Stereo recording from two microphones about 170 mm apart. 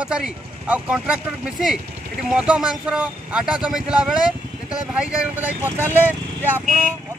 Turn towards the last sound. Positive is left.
turn(degrees=-10)  # may be behind; listen again after turning